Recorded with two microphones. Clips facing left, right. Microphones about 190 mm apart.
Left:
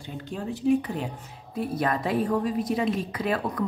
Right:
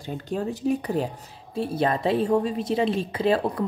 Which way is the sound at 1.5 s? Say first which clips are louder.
Right 2 dB; 30° right (ahead or behind).